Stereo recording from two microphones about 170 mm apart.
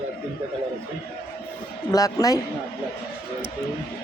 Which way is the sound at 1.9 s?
20° left (ahead or behind).